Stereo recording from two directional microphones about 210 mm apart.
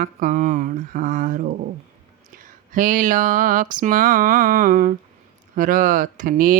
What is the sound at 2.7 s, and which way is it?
Speech, 40° right (ahead or behind).